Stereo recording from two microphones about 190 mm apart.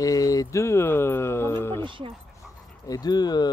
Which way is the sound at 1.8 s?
25° right (ahead or behind).